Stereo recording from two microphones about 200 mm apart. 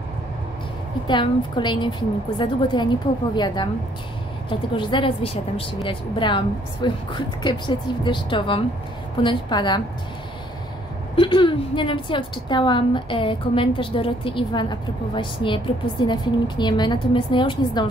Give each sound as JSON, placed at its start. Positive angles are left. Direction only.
{"t": 1.0, "sound": "a woman's voice", "side_deg": 25}
{"t": 11.1, "sound": "a woman's voice", "side_deg": 25}